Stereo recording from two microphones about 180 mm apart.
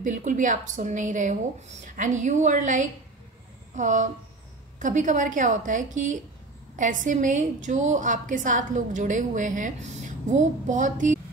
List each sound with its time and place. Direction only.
0.0 s a woman's voice: 45° right (ahead or behind)